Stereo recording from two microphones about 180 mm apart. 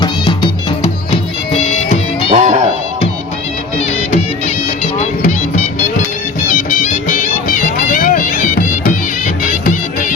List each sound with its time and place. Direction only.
0.0 s music: 25° left (ahead or behind)
2.3 s music: 40° right (ahead or behind)
3.8 s music: 35° left (ahead or behind)
6.5 s music: 45° left (ahead or behind)